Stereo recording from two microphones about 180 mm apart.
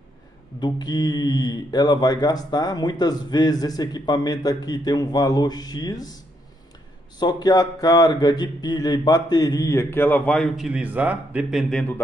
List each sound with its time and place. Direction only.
0.6 s speech: 25° left (ahead or behind)
7.2 s speech: 20° left (ahead or behind); by 11.8 s 5° right (ahead or behind)